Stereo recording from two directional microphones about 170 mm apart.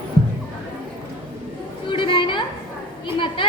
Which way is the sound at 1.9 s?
30° left (ahead or behind).